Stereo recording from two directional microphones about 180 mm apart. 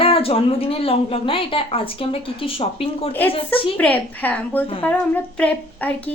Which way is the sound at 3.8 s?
10° left (ahead or behind).